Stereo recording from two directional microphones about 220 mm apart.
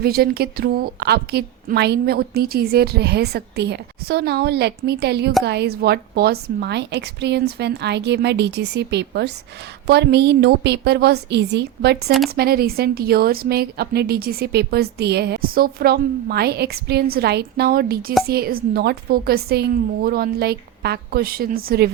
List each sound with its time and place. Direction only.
0.0 s a woman's voice: 45° right (ahead or behind)